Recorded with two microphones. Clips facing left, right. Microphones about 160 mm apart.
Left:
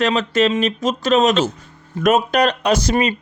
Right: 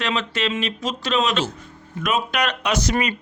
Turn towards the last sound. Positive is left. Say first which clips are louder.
# left 5 dB
turn(degrees=25)  # may be behind; listen again after turning